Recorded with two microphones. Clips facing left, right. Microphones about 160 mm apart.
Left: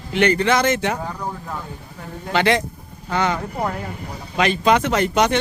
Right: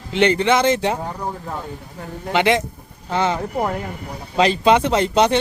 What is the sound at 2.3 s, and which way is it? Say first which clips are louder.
Speech: right 1 dB; 20° right (ahead or behind).